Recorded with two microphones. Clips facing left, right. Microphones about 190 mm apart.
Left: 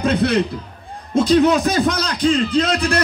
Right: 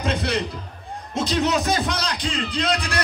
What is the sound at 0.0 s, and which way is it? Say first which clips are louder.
A man's voice: left 7 dB; 55° left (ahead or behind).